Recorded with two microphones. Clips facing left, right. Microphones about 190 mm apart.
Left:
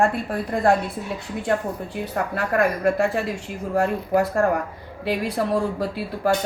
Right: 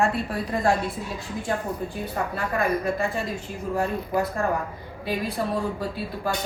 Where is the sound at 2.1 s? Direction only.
75° left (ahead or behind).